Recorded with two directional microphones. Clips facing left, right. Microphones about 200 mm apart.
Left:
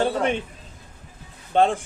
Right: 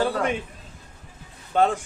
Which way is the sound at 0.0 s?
25° left (ahead or behind).